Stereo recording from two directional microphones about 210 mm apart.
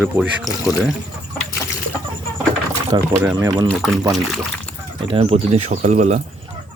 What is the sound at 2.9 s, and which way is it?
Speech, 20° right (ahead or behind).